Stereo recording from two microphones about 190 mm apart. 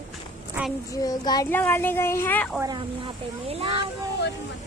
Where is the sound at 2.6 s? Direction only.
25° right (ahead or behind).